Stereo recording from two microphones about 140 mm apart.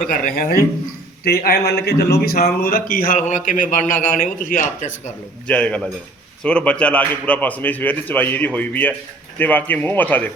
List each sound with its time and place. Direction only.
0.0 s speech: 70° left (ahead or behind)
5.5 s a man's voice: 10° left (ahead or behind)